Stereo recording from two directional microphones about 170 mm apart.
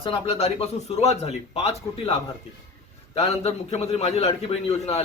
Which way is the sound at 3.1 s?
35° left (ahead or behind).